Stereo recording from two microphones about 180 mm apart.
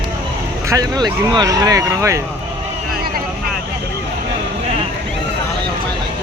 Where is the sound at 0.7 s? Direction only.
20° right (ahead or behind).